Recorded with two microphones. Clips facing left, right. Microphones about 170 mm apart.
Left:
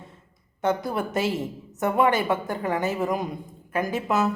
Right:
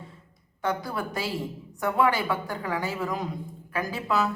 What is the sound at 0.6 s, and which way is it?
A man's voice, 20° left (ahead or behind).